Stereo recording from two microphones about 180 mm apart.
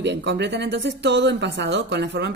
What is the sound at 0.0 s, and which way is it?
A woman's voice, 75° right (ahead or behind).